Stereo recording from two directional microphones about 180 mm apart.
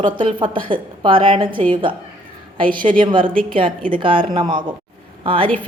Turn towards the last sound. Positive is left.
turn(degrees=-30)  # may be behind; listen again after turning